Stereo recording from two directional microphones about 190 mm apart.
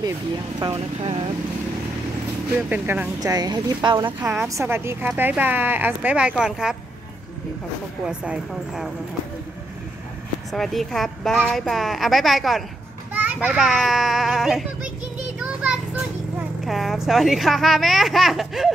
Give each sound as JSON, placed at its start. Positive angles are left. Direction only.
{"t": 0.6, "sound": "speech", "side_deg": -25}
{"t": 2.7, "sound": "a woman's voice", "side_deg": -10}
{"t": 3.2, "sound": "speech", "side_deg": -20}
{"t": 4.2, "sound": "a woman's voice", "side_deg": -10}
{"t": 8.0, "sound": "a woman's voice", "side_deg": -5}
{"t": 10.5, "sound": "a woman's voice", "side_deg": 0}
{"t": 15.3, "sound": "children playing", "side_deg": -5}